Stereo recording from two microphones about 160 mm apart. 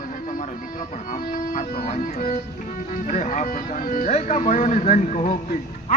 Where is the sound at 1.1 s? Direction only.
60° left (ahead or behind).